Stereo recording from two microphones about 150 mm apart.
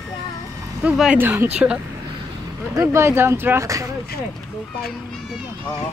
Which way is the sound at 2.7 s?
20° right (ahead or behind).